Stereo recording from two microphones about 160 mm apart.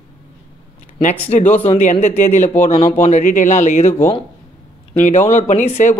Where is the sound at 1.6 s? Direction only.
40° left (ahead or behind).